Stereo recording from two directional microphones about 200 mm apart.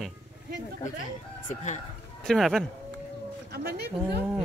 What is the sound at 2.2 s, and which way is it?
Speech, centre (ahead or behind).